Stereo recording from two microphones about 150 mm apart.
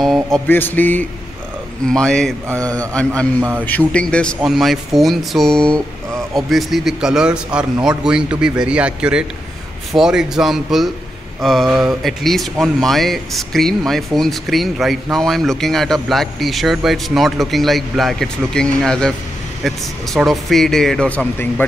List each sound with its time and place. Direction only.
0.0 s music: centre (ahead or behind)
0.5 s speech: 15° left (ahead or behind)
2.6 s a man's voice: 25° right (ahead or behind)
3.6 s speech: 10° left (ahead or behind)